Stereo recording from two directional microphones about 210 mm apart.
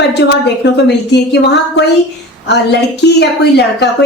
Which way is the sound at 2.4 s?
55° left (ahead or behind).